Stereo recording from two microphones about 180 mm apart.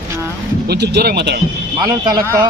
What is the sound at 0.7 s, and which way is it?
Speech, 65° right (ahead or behind).